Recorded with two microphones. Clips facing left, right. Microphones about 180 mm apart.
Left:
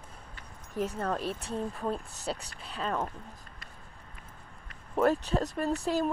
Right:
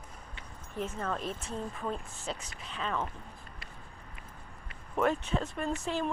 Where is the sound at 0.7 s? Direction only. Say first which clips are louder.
Left 4 dB; 35° left (ahead or behind).